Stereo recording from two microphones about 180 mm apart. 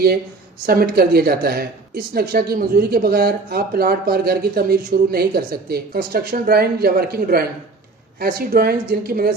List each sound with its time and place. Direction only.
0.7 s speech: 55° right (ahead or behind)